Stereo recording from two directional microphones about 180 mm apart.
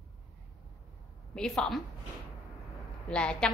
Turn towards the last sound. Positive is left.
turn(degrees=5)  # may be behind; listen again after turning